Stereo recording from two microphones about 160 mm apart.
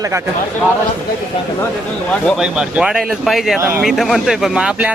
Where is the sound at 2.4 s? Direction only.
5° right (ahead or behind).